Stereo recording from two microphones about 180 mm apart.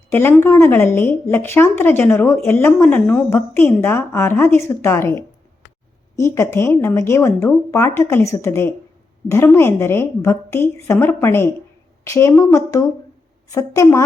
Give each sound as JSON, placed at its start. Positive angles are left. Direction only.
{"t": 0.1, "sound": "a woman's voice", "side_deg": 10}